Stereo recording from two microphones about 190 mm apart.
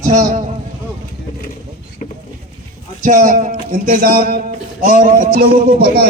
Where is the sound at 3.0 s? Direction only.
45° right (ahead or behind).